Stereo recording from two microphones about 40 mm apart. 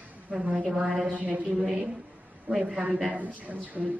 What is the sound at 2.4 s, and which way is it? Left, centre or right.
Speech, right.